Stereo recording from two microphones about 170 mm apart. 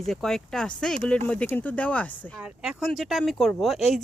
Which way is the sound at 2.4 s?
5° right (ahead or behind).